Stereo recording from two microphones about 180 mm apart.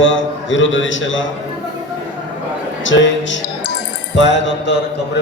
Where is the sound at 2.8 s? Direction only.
90° left.